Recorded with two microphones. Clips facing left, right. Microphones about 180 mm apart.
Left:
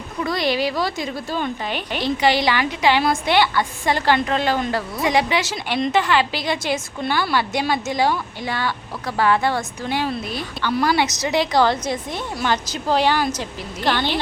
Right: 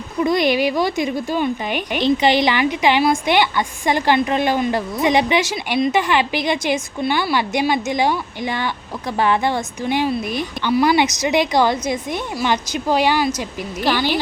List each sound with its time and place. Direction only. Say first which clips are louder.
0.2 s a woman's voice: right 5 dB; 20° right (ahead or behind)